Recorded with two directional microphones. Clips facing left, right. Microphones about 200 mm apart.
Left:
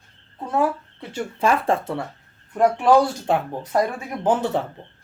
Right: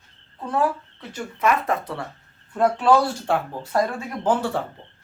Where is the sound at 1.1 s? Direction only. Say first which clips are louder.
Left 1 dB; 30° left (ahead or behind).